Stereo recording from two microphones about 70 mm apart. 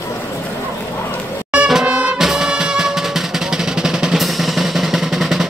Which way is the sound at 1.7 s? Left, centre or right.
Centre.